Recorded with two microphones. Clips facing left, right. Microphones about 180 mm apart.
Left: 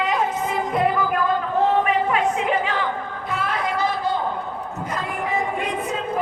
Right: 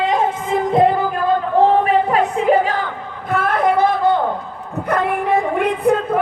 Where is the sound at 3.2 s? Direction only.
50° right (ahead or behind).